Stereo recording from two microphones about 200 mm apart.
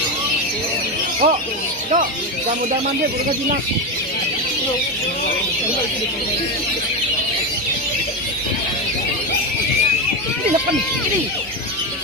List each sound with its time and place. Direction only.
1.2 s speech: 35° right (ahead or behind)